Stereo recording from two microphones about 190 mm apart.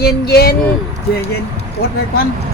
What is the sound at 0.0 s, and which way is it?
Speech, 55° left (ahead or behind).